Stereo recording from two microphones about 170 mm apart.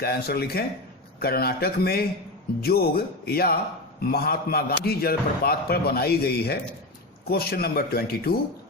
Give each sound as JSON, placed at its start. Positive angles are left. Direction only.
{"t": 0.0, "sound": "speech", "side_deg": 65}